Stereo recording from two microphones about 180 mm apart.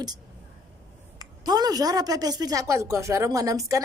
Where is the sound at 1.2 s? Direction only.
20° right (ahead or behind).